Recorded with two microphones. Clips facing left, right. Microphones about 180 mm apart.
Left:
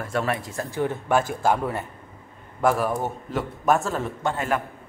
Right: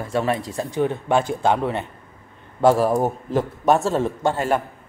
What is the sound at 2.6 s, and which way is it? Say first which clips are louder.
Speech: right 6 dB; 30° right (ahead or behind).